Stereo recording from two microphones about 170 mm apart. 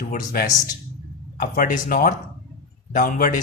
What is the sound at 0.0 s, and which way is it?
Speech, 60° left (ahead or behind).